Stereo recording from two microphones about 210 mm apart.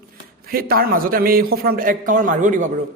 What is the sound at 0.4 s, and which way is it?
A man's voice, 45° right (ahead or behind).